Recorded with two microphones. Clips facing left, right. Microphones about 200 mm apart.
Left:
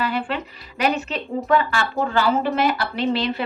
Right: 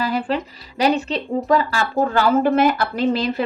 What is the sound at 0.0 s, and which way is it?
A woman's voice, 40° right (ahead or behind).